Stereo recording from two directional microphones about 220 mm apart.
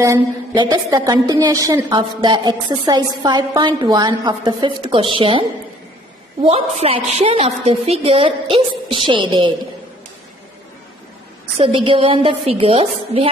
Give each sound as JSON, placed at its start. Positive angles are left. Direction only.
{"t": 0.0, "sound": "a woman's voice", "side_deg": -15}
{"t": 6.8, "sound": "a woman's voice", "side_deg": -25}
{"t": 11.5, "sound": "a woman's voice", "side_deg": -25}